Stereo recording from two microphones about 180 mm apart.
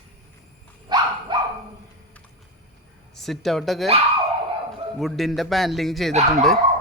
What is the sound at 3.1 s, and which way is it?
Speech, centre (ahead or behind).